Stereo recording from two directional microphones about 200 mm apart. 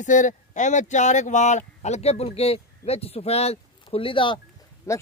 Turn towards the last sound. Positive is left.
turn(degrees=15)  # may be behind; listen again after turning